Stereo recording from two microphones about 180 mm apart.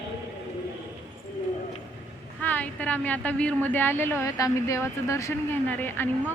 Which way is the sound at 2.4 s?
10° left (ahead or behind).